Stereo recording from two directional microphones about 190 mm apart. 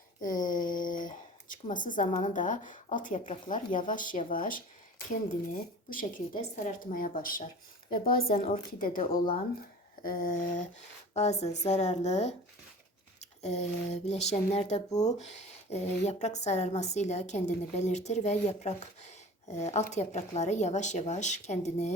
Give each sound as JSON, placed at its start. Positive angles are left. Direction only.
{"t": 0.2, "sound": "a sound", "side_deg": 45}
{"t": 2.2, "sound": "speech", "side_deg": 40}
{"t": 5.9, "sound": "speech", "side_deg": 45}
{"t": 8.1, "sound": "a woman's voice", "side_deg": 30}
{"t": 8.8, "sound": "a woman's voice", "side_deg": 50}
{"t": 13.4, "sound": "a woman's voice", "side_deg": 35}